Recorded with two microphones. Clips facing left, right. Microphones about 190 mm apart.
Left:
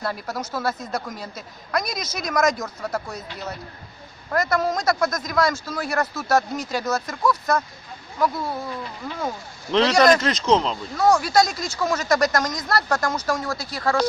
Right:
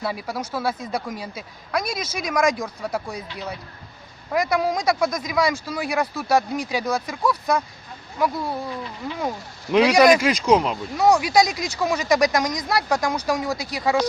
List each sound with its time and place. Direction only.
0.0 s speech: 10° right (ahead or behind)
9.7 s speech: 10° right (ahead or behind)